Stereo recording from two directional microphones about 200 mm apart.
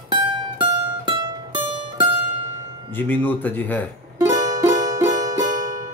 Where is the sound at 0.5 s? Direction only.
25° right (ahead or behind).